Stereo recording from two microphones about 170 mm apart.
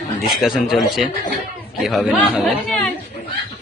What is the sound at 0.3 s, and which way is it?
Speech, centre (ahead or behind).